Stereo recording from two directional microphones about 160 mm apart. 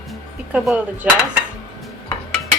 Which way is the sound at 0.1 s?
Centre (ahead or behind).